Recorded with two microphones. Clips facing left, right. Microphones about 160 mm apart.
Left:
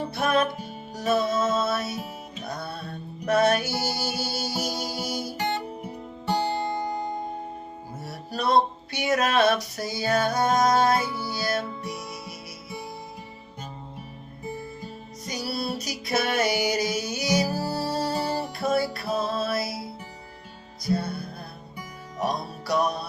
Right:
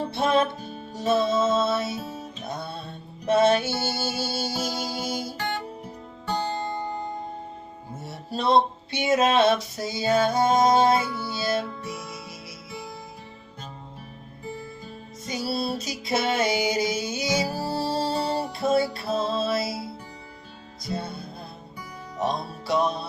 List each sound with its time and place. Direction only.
0.1 s music: 25° right (ahead or behind)
5.4 s guitar: 10° left (ahead or behind)
8.0 s music: 25° right (ahead or behind)
15.3 s music: 25° right (ahead or behind)
20.8 s music: 25° right (ahead or behind)